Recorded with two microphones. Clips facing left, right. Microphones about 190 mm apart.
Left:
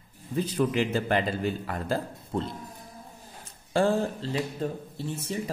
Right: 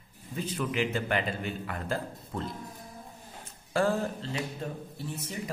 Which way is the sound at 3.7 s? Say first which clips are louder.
Left 3 dB; 30° left (ahead or behind).